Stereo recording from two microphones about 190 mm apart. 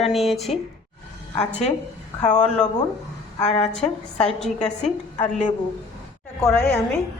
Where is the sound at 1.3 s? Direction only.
35° left (ahead or behind).